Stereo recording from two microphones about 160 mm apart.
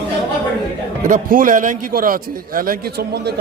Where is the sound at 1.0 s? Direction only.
55° right (ahead or behind).